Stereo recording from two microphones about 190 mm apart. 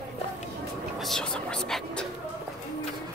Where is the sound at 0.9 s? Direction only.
Centre (ahead or behind).